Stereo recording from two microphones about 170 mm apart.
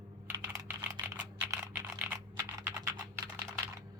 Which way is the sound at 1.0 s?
15° right (ahead or behind).